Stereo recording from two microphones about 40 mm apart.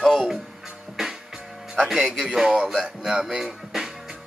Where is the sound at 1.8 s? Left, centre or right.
Centre.